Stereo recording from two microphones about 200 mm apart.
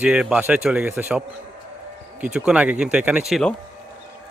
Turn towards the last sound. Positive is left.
turn(degrees=0)  # may be behind; listen again after turning